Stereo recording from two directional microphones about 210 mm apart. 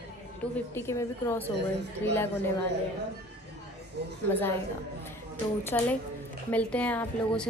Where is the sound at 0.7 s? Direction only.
10° left (ahead or behind).